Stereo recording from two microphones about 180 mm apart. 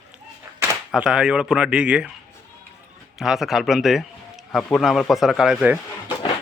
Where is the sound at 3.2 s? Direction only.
Centre (ahead or behind).